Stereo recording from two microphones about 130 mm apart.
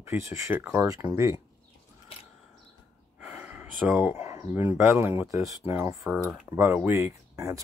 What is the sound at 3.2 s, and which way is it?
Gasp, 15° right (ahead or behind).